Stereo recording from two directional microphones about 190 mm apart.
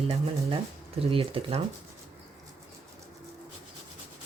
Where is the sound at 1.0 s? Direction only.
30° right (ahead or behind).